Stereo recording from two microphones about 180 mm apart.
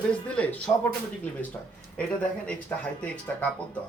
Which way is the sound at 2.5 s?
5° left (ahead or behind).